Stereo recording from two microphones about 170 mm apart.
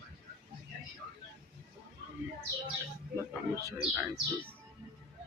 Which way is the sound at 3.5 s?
20° right (ahead or behind).